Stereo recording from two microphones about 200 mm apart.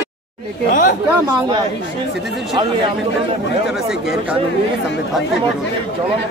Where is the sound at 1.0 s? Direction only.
20° right (ahead or behind).